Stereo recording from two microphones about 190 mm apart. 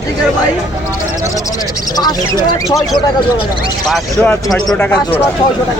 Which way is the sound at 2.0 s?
20° left (ahead or behind).